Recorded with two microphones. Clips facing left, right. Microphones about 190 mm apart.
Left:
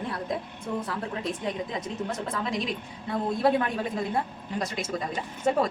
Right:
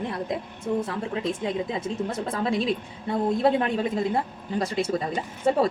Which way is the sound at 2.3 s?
30° right (ahead or behind).